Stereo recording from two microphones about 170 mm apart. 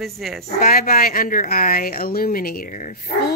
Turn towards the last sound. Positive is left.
turn(degrees=55)  # may be behind; listen again after turning